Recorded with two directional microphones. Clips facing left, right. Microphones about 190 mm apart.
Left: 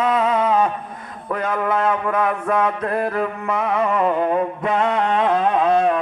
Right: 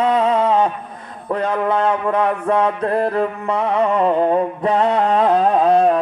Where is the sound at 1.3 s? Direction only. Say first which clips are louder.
Right 3 dB; 30° right (ahead or behind).